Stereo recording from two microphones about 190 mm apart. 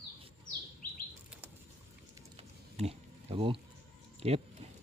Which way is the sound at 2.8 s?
30° right (ahead or behind).